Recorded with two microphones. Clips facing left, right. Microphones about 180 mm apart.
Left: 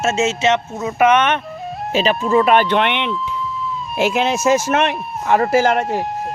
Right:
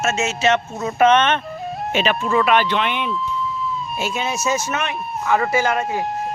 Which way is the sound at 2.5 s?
50° left (ahead or behind).